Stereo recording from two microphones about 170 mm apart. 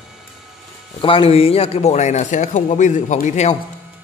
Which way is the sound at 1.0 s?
30° left (ahead or behind).